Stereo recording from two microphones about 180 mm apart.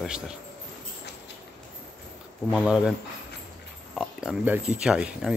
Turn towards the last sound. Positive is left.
turn(degrees=-5)  # may be behind; listen again after turning